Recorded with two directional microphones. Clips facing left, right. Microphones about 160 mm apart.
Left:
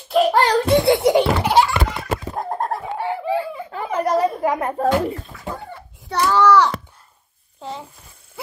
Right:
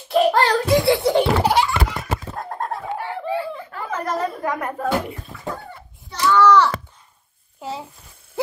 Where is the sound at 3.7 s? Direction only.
20° left (ahead or behind).